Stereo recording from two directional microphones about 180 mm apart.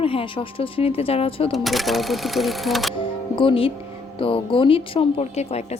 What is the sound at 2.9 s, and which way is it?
Music, 30° left (ahead or behind).